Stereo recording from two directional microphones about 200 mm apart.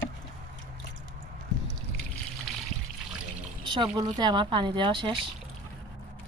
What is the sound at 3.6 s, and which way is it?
Speech, 20° right (ahead or behind).